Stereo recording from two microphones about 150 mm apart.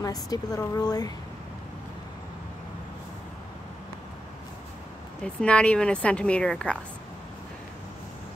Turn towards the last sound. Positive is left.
turn(degrees=5)  # may be behind; listen again after turning